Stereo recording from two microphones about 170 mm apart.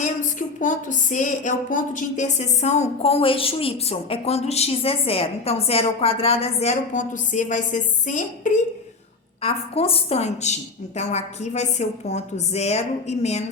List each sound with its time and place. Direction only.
0.0 s speech: 50° left (ahead or behind)
9.4 s speech: 35° left (ahead or behind)